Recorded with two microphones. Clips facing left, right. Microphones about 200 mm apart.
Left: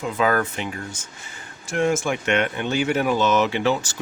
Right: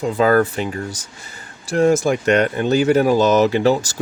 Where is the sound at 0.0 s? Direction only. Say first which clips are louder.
Right 6 dB; 35° right (ahead or behind).